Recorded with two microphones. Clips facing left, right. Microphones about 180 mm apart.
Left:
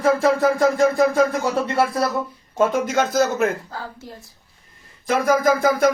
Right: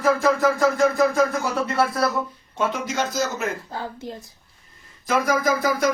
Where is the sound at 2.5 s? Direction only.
45° left (ahead or behind).